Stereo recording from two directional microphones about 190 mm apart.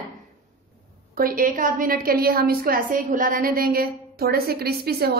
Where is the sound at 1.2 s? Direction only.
50° right (ahead or behind).